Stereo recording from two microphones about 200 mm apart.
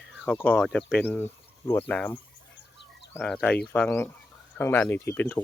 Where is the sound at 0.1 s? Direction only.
Centre (ahead or behind).